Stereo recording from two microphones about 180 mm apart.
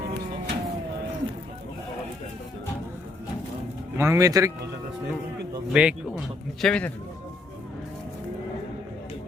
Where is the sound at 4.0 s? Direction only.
15° right (ahead or behind).